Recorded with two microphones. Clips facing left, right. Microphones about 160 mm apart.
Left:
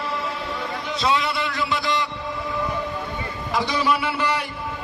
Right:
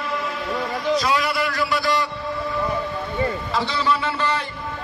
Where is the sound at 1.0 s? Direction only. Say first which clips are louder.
Right 1 dB; 25° left (ahead or behind).